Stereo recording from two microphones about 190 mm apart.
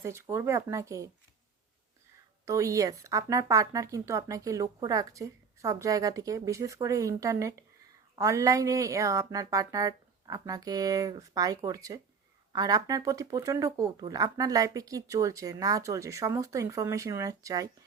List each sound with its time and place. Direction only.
0.0 s speech: 15° right (ahead or behind)
2.4 s speech: 15° right (ahead or behind)